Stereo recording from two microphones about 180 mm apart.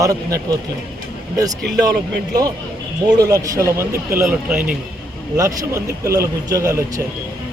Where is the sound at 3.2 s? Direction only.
20° right (ahead or behind).